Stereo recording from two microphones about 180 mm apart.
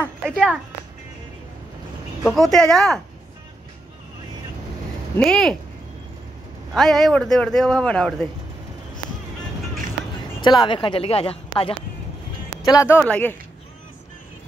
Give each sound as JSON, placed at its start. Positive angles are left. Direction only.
{"t": 0.3, "sound": "speech", "side_deg": 0}
{"t": 2.2, "sound": "speech", "side_deg": 0}
{"t": 5.1, "sound": "speech", "side_deg": 5}
{"t": 6.7, "sound": "speech", "side_deg": 0}
{"t": 10.4, "sound": "speech", "side_deg": 25}
{"t": 12.6, "sound": "speech", "side_deg": 15}